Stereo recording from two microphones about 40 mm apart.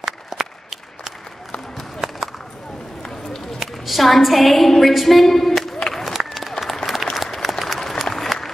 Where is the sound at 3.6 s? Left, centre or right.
Centre.